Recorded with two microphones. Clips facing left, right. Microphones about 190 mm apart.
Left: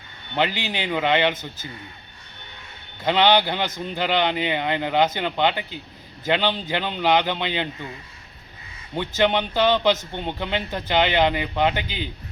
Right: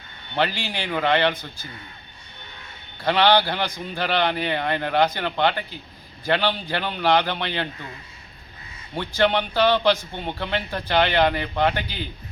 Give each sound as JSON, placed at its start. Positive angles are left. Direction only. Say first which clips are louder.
{"t": 0.3, "sound": "a man's voice", "louder": "left 1 dB", "side_deg": 20}
{"t": 3.0, "sound": "a man's voice", "louder": "even", "side_deg": 20}
{"t": 9.0, "sound": "a man's voice", "louder": "even", "side_deg": 15}